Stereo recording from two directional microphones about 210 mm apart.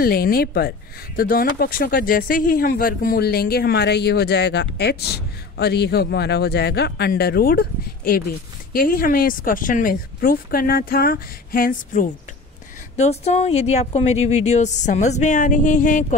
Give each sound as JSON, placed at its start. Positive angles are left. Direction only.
{"t": 0.0, "sound": "speech", "side_deg": 45}